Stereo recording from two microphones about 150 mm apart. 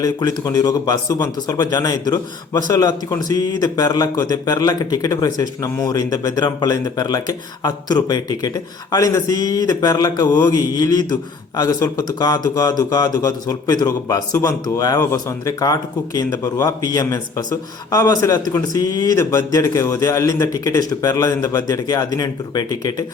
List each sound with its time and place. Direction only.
0.0 s speech: 25° left (ahead or behind)